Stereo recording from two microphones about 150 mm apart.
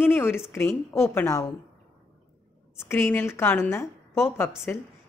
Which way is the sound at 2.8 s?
15° left (ahead or behind).